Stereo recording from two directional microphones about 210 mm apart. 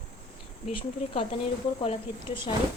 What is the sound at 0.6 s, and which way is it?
A woman's voice, 25° left (ahead or behind).